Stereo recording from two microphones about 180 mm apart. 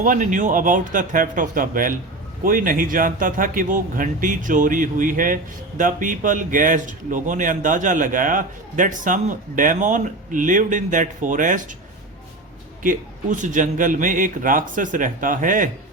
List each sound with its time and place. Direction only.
0.0 s speech: 45° right (ahead or behind)
12.8 s speech: 45° right (ahead or behind)